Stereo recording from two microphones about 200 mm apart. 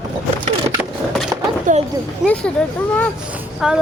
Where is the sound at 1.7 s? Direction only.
40° right (ahead or behind).